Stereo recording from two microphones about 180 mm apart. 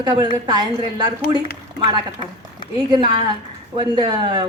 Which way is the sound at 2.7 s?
25° right (ahead or behind).